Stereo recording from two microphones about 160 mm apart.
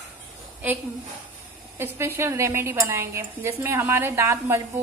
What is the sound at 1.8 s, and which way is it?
A woman's voice, 15° right (ahead or behind).